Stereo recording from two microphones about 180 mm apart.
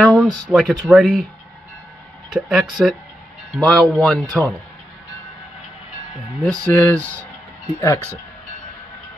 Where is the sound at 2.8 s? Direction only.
5° right (ahead or behind).